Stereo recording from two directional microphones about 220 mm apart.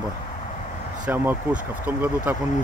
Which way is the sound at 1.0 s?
10° right (ahead or behind).